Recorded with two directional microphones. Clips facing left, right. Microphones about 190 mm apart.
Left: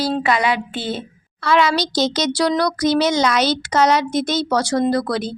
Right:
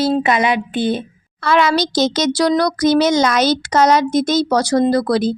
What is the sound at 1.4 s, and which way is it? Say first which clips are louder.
A child's voice: right 2 dB; 50° right (ahead or behind).